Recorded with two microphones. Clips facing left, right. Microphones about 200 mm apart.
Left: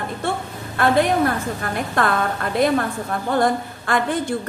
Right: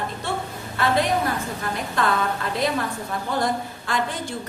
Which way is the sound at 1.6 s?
55° left (ahead or behind).